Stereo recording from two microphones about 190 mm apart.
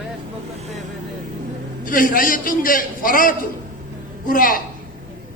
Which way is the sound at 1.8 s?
45° left (ahead or behind).